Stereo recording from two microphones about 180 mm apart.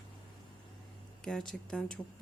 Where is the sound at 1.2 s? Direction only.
5° left (ahead or behind).